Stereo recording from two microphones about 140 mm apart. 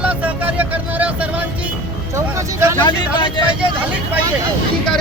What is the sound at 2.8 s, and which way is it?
Speech, 35° left (ahead or behind).